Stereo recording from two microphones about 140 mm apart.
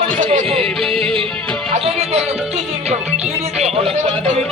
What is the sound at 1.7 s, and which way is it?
Music, 50° right (ahead or behind).